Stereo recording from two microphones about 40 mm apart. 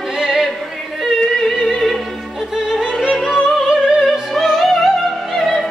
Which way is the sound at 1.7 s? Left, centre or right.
Centre.